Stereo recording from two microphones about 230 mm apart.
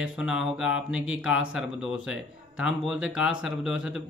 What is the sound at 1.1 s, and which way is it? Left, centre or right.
Speech, centre.